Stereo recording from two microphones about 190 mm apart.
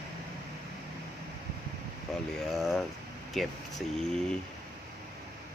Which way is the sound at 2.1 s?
Centre (ahead or behind).